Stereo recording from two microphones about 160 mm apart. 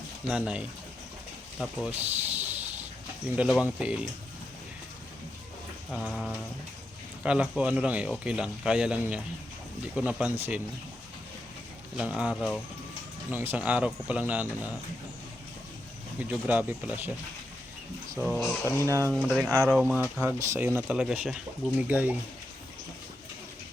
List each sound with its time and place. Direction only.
0.3 s speech: 5° right (ahead or behind)
1.9 s snake: 10° right (ahead or behind)
3.3 s speech: 5° right (ahead or behind)
5.9 s speech: centre (ahead or behind)
11.9 s speech: 5° right (ahead or behind)
16.3 s speech: 10° right (ahead or behind)
18.2 s speech: centre (ahead or behind)
18.6 s speech: 15° left (ahead or behind)
19.1 s speech: 5° right (ahead or behind)
20.0 s speech: 10° right (ahead or behind)